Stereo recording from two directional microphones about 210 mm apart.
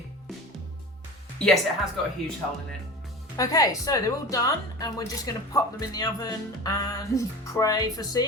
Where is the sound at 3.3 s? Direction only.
15° left (ahead or behind).